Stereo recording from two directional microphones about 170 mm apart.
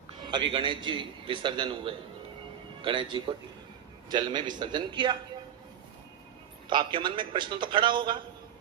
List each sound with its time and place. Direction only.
0.2 s a sound: 25° right (ahead or behind)
0.5 s a man's voice: 30° right (ahead or behind)
6.7 s a man's voice: 25° right (ahead or behind)